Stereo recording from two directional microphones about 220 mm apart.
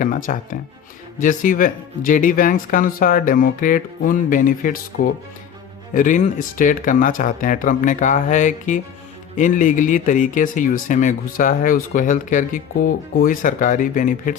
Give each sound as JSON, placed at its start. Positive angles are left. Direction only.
{"t": 0.0, "sound": "speech", "side_deg": 35}